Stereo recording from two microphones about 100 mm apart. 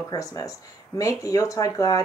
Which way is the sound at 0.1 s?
35° left (ahead or behind).